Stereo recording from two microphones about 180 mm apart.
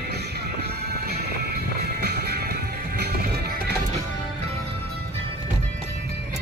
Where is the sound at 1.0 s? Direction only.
60° right (ahead or behind).